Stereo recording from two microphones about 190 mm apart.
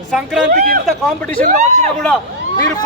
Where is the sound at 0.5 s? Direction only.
50° right (ahead or behind).